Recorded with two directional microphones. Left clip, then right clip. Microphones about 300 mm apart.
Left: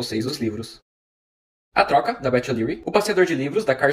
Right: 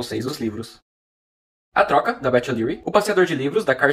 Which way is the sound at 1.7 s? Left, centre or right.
Centre.